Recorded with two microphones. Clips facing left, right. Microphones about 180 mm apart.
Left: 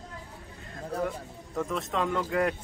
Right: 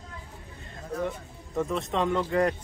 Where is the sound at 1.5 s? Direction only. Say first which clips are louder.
Right 2 dB; centre (ahead or behind).